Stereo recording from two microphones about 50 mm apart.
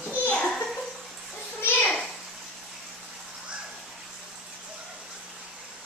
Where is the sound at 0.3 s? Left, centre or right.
Centre.